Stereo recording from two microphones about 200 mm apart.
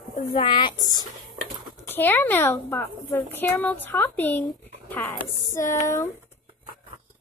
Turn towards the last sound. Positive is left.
turn(degrees=15)  # may be behind; listen again after turning